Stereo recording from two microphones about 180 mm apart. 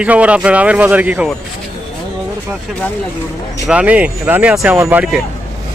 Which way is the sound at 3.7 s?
10° right (ahead or behind).